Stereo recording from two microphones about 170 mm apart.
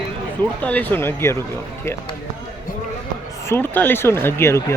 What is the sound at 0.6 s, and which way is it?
Speech, 10° left (ahead or behind).